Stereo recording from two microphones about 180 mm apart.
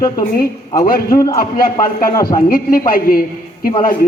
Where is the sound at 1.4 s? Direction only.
55° left (ahead or behind).